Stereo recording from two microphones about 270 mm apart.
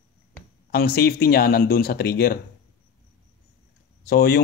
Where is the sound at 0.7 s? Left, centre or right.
Left.